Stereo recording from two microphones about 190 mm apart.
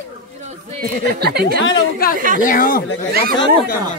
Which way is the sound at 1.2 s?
55° right (ahead or behind).